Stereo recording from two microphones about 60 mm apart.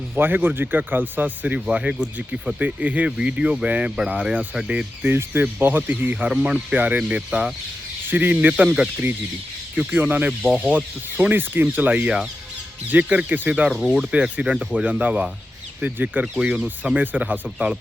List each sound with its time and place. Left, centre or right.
0.2 s speech: right
1.5 s speech: centre
5.0 s speech: right; by 8.9 s centre
9.7 s speech: right
13.7 s speech: centre; by 16.2 s right
16.4 s speech: centre
17.0 s speech: right